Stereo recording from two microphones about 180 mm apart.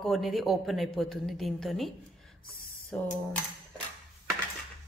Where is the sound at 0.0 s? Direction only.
Centre (ahead or behind).